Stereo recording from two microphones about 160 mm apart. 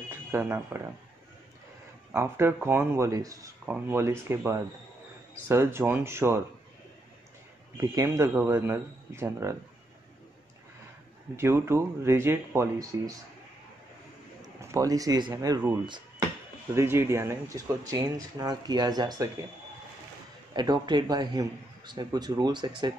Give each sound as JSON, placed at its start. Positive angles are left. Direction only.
{"t": 0.1, "sound": "speech", "side_deg": -15}
{"t": 2.1, "sound": "speech", "side_deg": -15}
{"t": 7.7, "sound": "speech", "side_deg": -20}
{"t": 11.3, "sound": "speech", "side_deg": -15}
{"t": 14.4, "sound": "a man's voice", "side_deg": -20}
{"t": 16.7, "sound": "speech", "side_deg": -15}
{"t": 20.5, "sound": "speech", "side_deg": -25}